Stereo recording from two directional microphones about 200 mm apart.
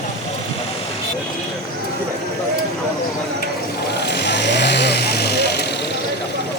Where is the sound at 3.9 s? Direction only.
55° left (ahead or behind).